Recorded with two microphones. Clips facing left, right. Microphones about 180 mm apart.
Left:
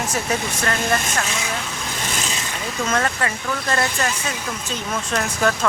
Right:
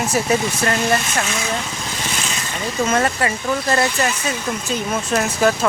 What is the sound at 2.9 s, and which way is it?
Speech, 15° right (ahead or behind).